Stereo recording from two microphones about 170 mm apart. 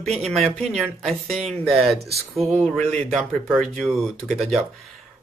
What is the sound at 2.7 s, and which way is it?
Speech, 40° right (ahead or behind).